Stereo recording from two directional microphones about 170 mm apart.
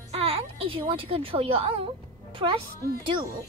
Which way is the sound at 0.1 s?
35° right (ahead or behind).